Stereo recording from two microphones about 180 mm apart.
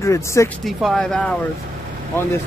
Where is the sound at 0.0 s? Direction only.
15° left (ahead or behind).